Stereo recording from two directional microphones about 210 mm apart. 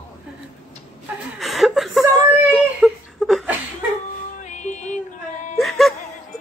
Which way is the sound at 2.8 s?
Centre (ahead or behind).